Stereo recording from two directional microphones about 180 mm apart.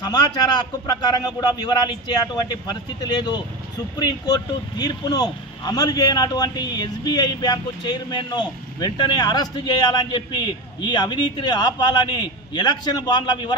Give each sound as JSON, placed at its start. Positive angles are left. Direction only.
{"t": 0.0, "sound": "speech", "side_deg": 20}